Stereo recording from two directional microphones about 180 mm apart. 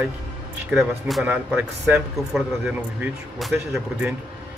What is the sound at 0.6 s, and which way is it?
Speech, centre (ahead or behind).